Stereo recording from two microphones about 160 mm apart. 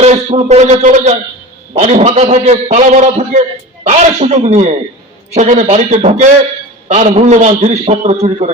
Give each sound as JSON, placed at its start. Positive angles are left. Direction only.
{"t": 0.0, "sound": "a man's voice", "side_deg": -40}